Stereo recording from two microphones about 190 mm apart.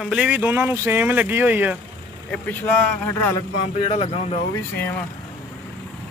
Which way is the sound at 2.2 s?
5° left (ahead or behind).